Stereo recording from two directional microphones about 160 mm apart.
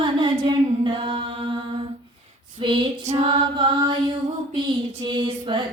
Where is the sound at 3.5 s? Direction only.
30° right (ahead or behind).